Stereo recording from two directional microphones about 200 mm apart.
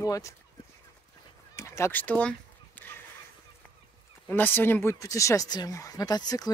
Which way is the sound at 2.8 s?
10° left (ahead or behind).